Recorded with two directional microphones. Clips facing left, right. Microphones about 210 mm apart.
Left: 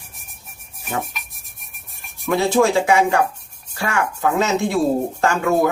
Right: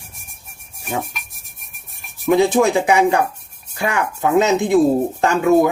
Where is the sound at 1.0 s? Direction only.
Centre (ahead or behind).